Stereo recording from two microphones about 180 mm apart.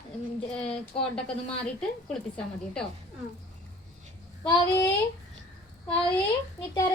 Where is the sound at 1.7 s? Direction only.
5° left (ahead or behind).